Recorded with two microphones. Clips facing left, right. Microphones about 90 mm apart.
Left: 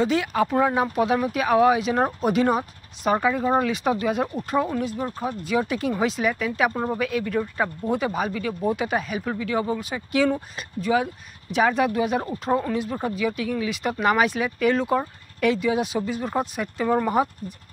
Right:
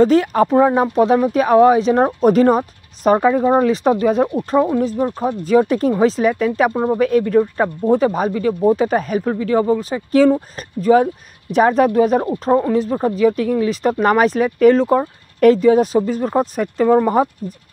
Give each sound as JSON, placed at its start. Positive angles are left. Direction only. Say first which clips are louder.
{"t": 0.0, "sound": "speech", "louder": "right 9 dB", "side_deg": -40}
{"t": 3.2, "sound": "speech", "louder": "right 6 dB", "side_deg": -30}